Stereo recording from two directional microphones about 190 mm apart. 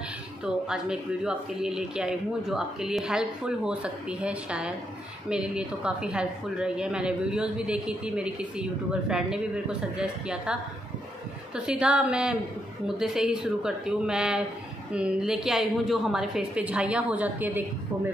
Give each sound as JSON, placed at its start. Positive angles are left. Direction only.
{"t": 0.4, "sound": "speech", "side_deg": -5}